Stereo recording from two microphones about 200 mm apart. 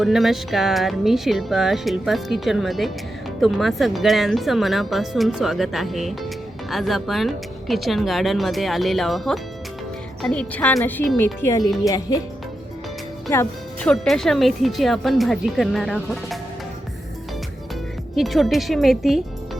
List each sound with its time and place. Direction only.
0.0 s speech: centre (ahead or behind)
11.4 s speech: 15° left (ahead or behind)
13.3 s speech: 15° left (ahead or behind)
13.9 s speech: centre (ahead or behind)
18.1 s speech: centre (ahead or behind)